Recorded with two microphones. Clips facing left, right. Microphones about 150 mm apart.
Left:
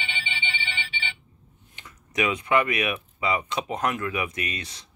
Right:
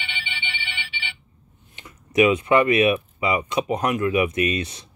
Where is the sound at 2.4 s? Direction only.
25° right (ahead or behind).